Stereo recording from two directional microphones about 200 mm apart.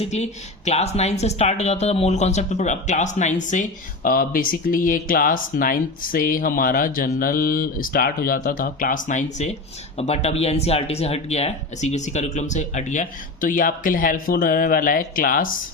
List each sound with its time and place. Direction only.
0.0 s speech: 35° left (ahead or behind)